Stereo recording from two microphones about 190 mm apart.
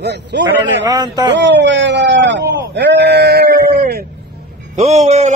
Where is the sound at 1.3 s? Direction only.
70° right (ahead or behind); by 4.0 s 55° right (ahead or behind).